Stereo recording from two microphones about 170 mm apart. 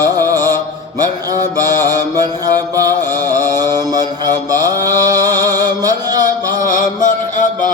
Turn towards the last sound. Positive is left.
turn(degrees=50)  # may be behind; listen again after turning